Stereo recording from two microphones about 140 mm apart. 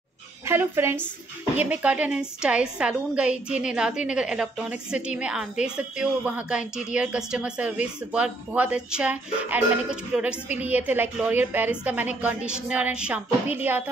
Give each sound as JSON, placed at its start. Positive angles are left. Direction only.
{"t": 0.5, "sound": "a woman's voice", "side_deg": -20}